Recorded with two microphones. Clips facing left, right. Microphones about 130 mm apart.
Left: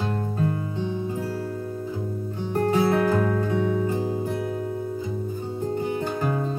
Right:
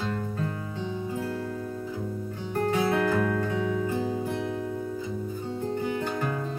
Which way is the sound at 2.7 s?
30° left (ahead or behind).